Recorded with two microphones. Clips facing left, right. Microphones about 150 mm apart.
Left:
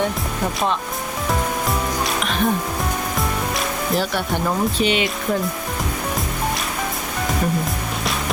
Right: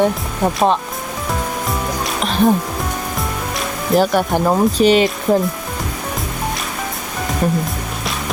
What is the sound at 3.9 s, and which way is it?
Speech, 45° right (ahead or behind).